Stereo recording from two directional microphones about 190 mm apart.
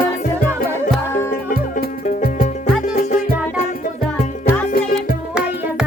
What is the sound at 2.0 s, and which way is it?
Music, 40° left (ahead or behind).